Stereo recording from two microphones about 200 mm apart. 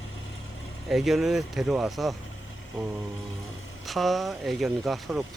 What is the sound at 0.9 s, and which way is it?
Speech, centre (ahead or behind).